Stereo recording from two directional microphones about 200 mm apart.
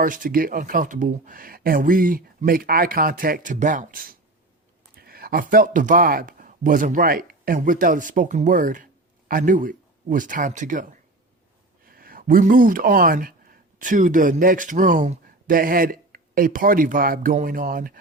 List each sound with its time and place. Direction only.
0.0 s speech: 45° right (ahead or behind)
11.9 s speech: 45° right (ahead or behind)